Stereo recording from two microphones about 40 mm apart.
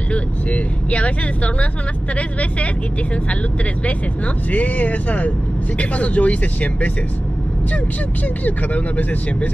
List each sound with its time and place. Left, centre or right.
0.1 s speech: left
4.5 s speech: left
8.5 s speech: left